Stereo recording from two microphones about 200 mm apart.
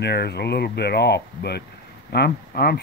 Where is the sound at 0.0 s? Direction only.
55° left (ahead or behind).